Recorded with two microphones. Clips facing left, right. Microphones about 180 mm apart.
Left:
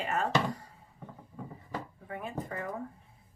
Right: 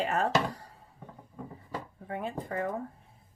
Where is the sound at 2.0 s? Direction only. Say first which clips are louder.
Right 6 dB; 35° right (ahead or behind).